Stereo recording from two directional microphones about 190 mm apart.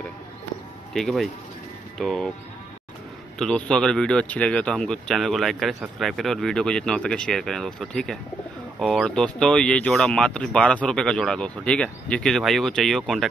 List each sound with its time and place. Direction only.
0.9 s speech: centre (ahead or behind)
3.3 s speech: 5° left (ahead or behind)